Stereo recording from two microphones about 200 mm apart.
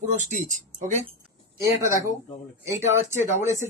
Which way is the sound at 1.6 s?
15° right (ahead or behind).